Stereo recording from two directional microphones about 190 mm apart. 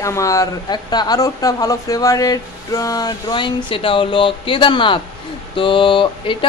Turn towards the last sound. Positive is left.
turn(degrees=25)  # may be behind; listen again after turning